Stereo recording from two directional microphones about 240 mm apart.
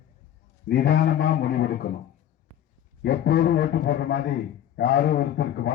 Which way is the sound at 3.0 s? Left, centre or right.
Left.